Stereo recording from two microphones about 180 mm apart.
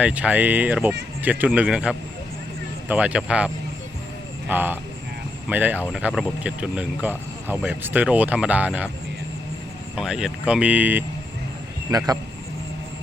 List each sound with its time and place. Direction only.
0.0 s speech: 5° right (ahead or behind)
9.9 s speech: 5° right (ahead or behind)
11.9 s speech: 20° right (ahead or behind)